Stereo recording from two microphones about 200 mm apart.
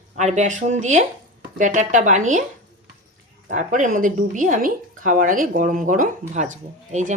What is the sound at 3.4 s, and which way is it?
Speech, 40° right (ahead or behind).